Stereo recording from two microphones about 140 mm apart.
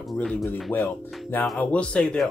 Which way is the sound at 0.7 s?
15° left (ahead or behind).